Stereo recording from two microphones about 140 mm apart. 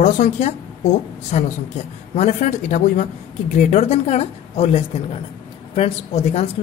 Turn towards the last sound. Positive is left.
turn(degrees=50)  # may be behind; listen again after turning